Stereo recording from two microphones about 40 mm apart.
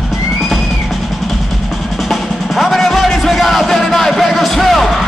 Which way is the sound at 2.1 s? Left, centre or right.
Centre.